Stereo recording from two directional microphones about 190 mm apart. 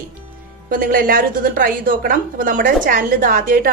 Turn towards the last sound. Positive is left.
turn(degrees=-45)  # may be behind; listen again after turning